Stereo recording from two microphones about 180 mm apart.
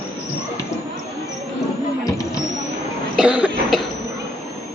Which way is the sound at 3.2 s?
5° right (ahead or behind).